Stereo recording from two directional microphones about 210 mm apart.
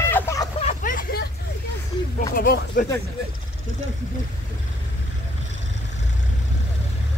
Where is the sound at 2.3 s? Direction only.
50° left (ahead or behind).